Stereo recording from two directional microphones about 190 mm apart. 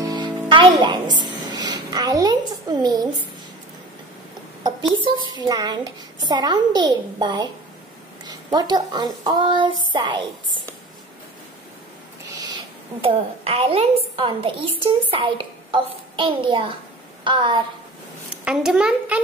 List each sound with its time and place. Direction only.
0.0 s music: 20° right (ahead or behind)
4.6 s a child's voice: 25° right (ahead or behind)
12.3 s owl: 20° right (ahead or behind)
13.0 s a woman's voice: 30° right (ahead or behind)
18.4 s a child's voice: 5° right (ahead or behind)